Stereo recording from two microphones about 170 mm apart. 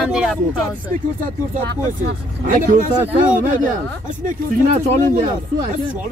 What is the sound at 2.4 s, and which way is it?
Speech, 55° right (ahead or behind).